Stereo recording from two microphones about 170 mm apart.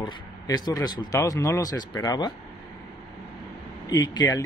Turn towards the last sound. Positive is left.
turn(degrees=25)  # may be behind; listen again after turning